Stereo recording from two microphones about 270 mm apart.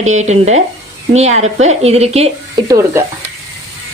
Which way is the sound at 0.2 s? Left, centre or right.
Right.